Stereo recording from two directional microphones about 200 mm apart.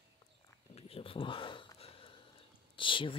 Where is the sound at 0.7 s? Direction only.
30° left (ahead or behind).